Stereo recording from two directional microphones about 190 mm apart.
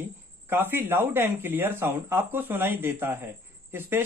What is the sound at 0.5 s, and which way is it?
Speech, 10° right (ahead or behind).